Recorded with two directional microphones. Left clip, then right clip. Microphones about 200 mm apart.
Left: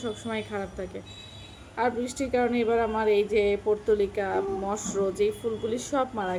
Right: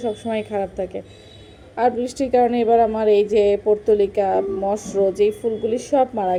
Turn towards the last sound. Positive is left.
turn(degrees=-10)  # may be behind; listen again after turning